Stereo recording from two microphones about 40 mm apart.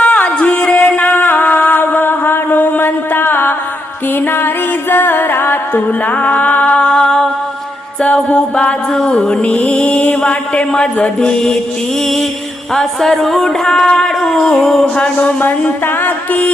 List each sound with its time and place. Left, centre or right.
0.0 s music: left
1.0 s mantra: left
4.1 s music: left
6.7 s music: centre
8.0 s music: left
8.9 s music: centre
9.2 s a man's voice: left
9.5 s mantra: left
12.7 s a sound: centre
14.9 s a man's voice: left
15.4 s a sound: left